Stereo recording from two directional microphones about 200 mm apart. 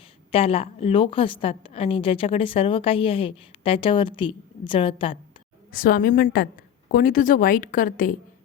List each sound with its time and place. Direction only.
0.3 s a woman's voice: 30° left (ahead or behind)
5.7 s a woman's voice: 45° left (ahead or behind)